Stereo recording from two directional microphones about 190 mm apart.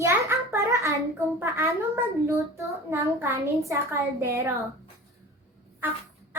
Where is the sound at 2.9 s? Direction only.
15° right (ahead or behind).